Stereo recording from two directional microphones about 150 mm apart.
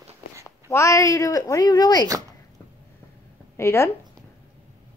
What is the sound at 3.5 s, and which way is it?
Speech, 20° left (ahead or behind).